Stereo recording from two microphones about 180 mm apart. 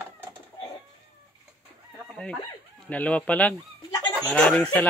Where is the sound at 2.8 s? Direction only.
5° left (ahead or behind).